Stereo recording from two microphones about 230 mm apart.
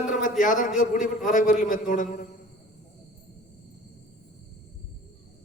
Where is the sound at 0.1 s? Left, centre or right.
Left.